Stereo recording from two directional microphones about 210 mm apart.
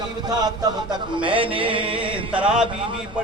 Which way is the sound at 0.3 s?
20° right (ahead or behind).